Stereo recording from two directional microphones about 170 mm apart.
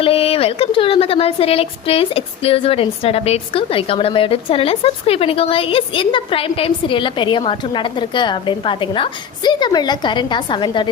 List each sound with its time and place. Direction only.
0.0 s speech: 35° left (ahead or behind)